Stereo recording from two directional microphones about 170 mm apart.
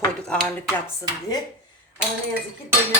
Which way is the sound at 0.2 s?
5° left (ahead or behind).